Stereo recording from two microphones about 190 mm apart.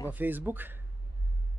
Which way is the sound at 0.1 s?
10° right (ahead or behind).